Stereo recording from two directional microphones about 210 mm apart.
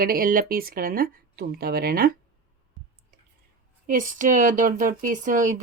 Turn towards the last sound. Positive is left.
turn(degrees=-35)  # may be behind; listen again after turning